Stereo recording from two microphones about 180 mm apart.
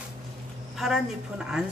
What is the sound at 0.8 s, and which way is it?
Speech, 5° right (ahead or behind).